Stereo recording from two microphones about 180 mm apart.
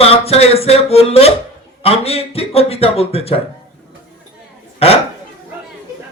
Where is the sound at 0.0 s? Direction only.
35° left (ahead or behind).